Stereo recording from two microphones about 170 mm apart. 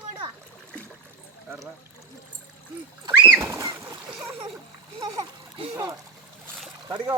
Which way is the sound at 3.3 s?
20° right (ahead or behind).